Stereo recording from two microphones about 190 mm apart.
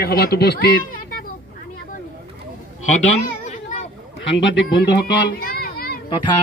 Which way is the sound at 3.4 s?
40° left (ahead or behind).